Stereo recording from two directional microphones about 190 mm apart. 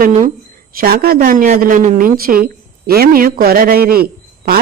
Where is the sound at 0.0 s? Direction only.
40° right (ahead or behind).